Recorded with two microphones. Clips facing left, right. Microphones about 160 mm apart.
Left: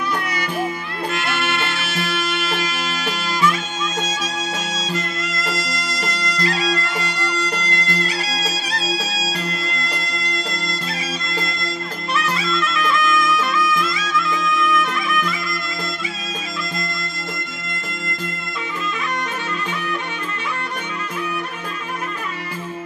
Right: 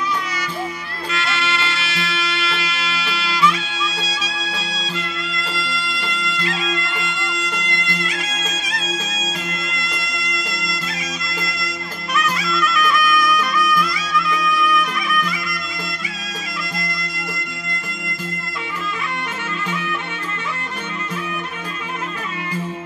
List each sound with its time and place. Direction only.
1.1 s music: 50° left (ahead or behind)
9.7 s music: 35° left (ahead or behind)
12.2 s music: 30° left (ahead or behind)